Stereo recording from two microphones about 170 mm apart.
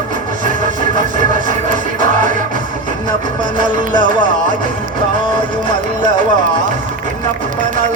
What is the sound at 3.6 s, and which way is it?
Music, 50° right (ahead or behind).